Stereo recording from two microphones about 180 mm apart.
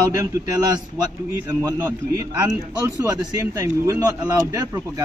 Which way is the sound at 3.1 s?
20° right (ahead or behind).